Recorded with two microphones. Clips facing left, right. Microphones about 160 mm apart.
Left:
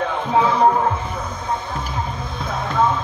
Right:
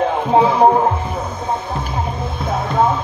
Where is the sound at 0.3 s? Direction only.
30° right (ahead or behind).